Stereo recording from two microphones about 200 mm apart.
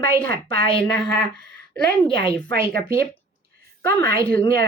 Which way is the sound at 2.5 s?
50° right (ahead or behind).